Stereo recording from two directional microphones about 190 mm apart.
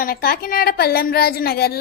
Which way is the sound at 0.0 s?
50° left (ahead or behind).